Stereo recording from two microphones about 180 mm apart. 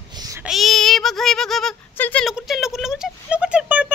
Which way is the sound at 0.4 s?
Centre (ahead or behind).